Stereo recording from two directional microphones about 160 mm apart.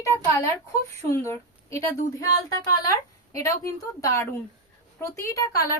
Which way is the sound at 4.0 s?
20° left (ahead or behind).